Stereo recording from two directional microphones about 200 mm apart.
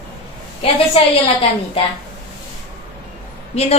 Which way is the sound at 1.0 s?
30° left (ahead or behind).